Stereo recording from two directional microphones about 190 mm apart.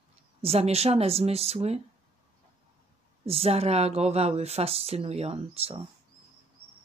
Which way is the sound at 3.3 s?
30° right (ahead or behind).